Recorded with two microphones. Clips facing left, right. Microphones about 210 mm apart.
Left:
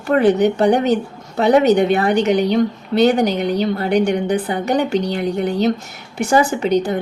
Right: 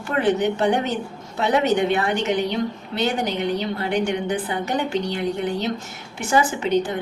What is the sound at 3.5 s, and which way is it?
A woman's voice, 40° left (ahead or behind).